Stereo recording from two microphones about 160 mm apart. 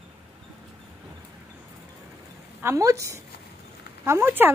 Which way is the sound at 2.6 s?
20° right (ahead or behind).